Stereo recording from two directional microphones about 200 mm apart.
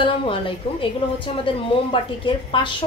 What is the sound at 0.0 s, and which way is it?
Speech, 25° left (ahead or behind).